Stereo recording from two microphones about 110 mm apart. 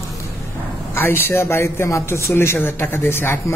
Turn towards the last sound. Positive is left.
turn(degrees=20)  # may be behind; listen again after turning